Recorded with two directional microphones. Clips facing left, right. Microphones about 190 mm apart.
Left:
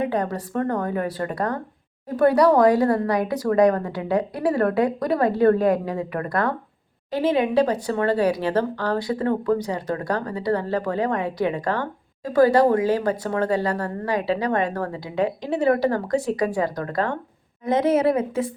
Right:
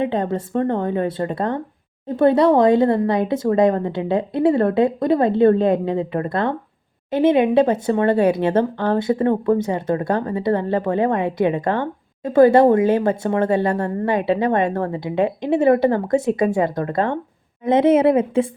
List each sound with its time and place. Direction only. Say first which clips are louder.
0.0 s a woman's voice: right 3 dB; 25° right (ahead or behind)